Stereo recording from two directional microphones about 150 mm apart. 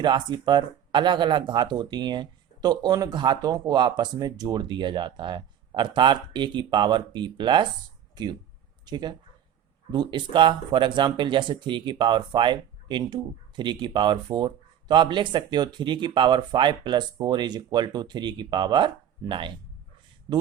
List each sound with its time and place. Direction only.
0.0 s speech: 30° right (ahead or behind)